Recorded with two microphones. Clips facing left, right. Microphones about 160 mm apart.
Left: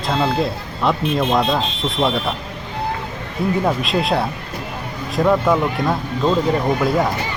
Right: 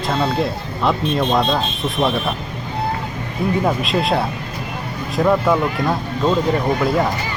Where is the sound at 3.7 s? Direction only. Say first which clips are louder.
Even; centre (ahead or behind).